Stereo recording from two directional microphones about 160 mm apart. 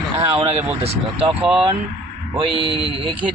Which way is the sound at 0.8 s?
35° right (ahead or behind).